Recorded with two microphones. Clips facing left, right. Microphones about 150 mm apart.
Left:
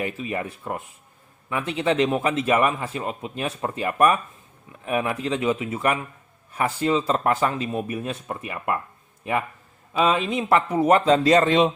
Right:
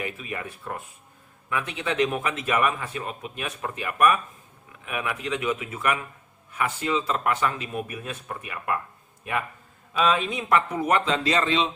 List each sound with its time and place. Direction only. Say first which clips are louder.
0.0 s a man's voice: left 5 dB; 30° left (ahead or behind)
10.0 s speech: left 3 dB; 30° left (ahead or behind); by 11.7 s 50° left (ahead or behind)